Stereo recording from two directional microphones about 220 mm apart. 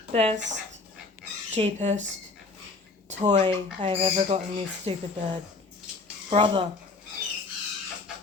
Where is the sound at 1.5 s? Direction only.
30° right (ahead or behind).